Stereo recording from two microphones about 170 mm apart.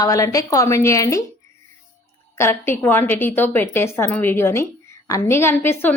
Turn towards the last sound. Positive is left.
turn(degrees=15)  # may be behind; listen again after turning